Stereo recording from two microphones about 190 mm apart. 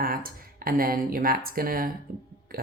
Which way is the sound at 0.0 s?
50° right (ahead or behind).